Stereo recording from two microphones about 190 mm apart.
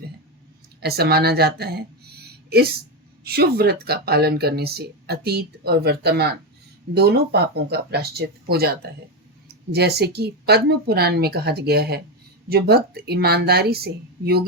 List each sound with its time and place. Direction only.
0.8 s speech: 55° right (ahead or behind)